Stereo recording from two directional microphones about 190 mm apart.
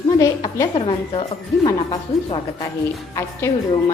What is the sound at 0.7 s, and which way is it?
Speech, 30° left (ahead or behind).